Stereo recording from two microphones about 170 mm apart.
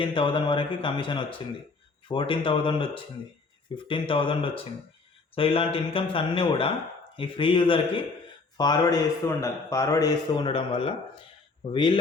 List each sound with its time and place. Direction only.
0.0 s a man's voice: 30° left (ahead or behind)